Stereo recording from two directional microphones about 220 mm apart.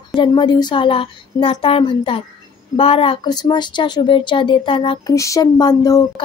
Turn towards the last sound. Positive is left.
turn(degrees=15)  # may be behind; listen again after turning